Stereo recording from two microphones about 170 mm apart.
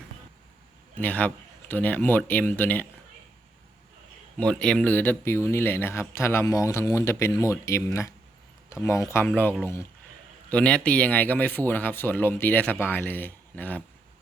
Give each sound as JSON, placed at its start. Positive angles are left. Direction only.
{"t": 1.0, "sound": "speech", "side_deg": 10}
{"t": 4.4, "sound": "speech", "side_deg": 5}